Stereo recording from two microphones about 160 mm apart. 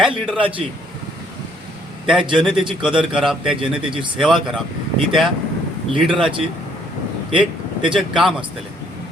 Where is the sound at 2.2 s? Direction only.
30° right (ahead or behind).